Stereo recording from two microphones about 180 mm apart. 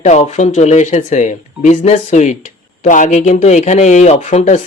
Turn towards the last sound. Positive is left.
turn(degrees=40)  # may be behind; listen again after turning